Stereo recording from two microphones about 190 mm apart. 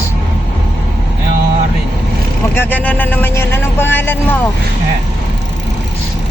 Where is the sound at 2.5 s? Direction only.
10° left (ahead or behind).